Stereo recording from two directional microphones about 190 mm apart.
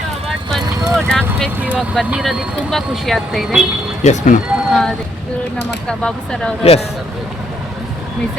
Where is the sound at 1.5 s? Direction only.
10° right (ahead or behind).